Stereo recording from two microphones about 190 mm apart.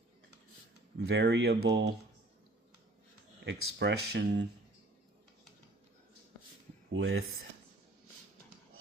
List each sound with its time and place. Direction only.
0.9 s speech: 60° right (ahead or behind)
3.4 s speech: 65° right (ahead or behind)
6.9 s speech: 90° right